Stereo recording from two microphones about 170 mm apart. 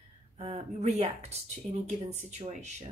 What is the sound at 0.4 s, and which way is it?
Speech, 40° right (ahead or behind).